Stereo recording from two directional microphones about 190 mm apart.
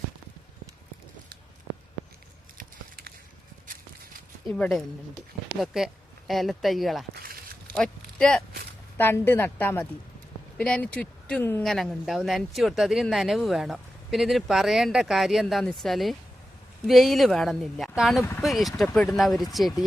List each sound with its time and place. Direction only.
2.6 s a sound: 50° right (ahead or behind)
4.5 s speech: centre (ahead or behind)
18.2 s speech: 10° left (ahead or behind)
18.4 s speech: centre (ahead or behind)
18.9 s speech: 15° left (ahead or behind)
19.1 s speech: centre (ahead or behind)